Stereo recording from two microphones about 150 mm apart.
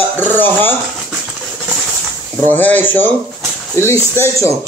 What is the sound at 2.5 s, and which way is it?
Speech, 10° left (ahead or behind).